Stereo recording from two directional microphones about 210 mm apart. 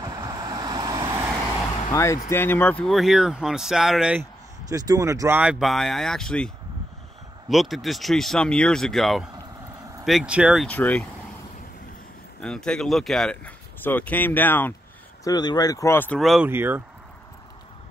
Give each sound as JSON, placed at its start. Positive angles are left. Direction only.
{"t": 0.0, "sound": "vehicle", "side_deg": -15}
{"t": 1.9, "sound": "speech", "side_deg": 15}
{"t": 12.4, "sound": "speech", "side_deg": 5}
{"t": 15.2, "sound": "speech", "side_deg": 20}
{"t": 16.4, "sound": "speech", "side_deg": -10}